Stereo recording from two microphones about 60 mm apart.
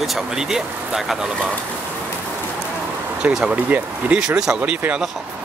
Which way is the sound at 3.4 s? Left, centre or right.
Right.